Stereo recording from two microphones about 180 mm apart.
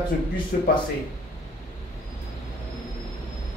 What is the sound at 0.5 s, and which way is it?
Speech, 55° left (ahead or behind).